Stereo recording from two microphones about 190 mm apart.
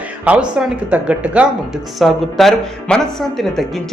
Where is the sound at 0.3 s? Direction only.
5° right (ahead or behind).